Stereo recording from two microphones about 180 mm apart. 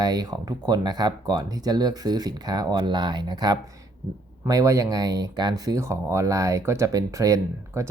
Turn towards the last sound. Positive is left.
turn(degrees=-15)  # may be behind; listen again after turning